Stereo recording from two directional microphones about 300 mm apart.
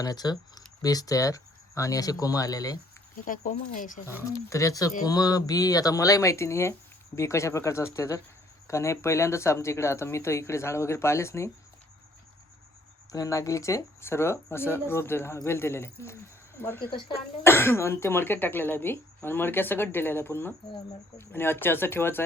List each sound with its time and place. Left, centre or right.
0.0 s speech: centre
3.2 s speech: left
4.0 s speech: centre
13.1 s speech: centre